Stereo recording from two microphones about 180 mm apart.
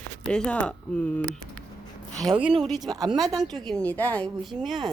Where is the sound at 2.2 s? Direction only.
5° right (ahead or behind).